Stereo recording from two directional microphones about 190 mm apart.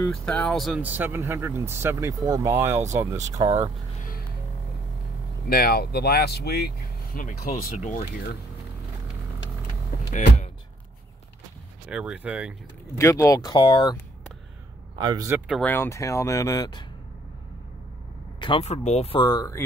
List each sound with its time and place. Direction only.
0.1 s speech: 5° left (ahead or behind); by 3.7 s 20° right (ahead or behind)
5.5 s speech: 55° left (ahead or behind)
11.9 s speech: 5° right (ahead or behind)
12.9 s speech: 15° left (ahead or behind)
15.0 s speech: 20° right (ahead or behind)
15.6 s speech: 10° left (ahead or behind)
18.4 s speech: 30° left (ahead or behind)